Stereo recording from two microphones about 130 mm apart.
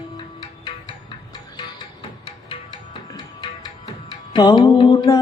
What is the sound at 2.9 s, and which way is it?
Music, 35° left (ahead or behind).